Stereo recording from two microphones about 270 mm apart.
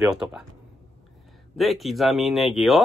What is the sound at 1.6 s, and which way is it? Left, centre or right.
Speech, centre.